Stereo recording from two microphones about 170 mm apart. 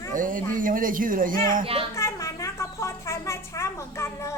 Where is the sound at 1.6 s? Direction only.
35° right (ahead or behind).